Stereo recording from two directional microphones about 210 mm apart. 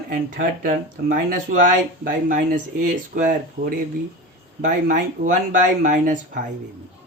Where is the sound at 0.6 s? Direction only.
40° right (ahead or behind).